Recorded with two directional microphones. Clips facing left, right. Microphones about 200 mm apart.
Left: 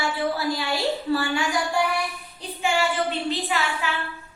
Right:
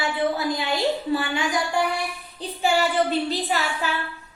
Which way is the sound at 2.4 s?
35° right (ahead or behind).